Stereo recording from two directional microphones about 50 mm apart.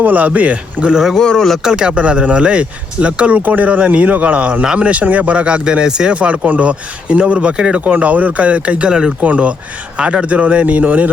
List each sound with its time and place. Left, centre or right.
0.0 s speech: right
1.1 s speech: centre
1.6 s speech: centre
6.1 s speech: right
9.2 s speech: right